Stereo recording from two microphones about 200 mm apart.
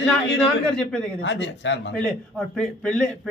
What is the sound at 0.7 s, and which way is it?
Speech, 5° left (ahead or behind).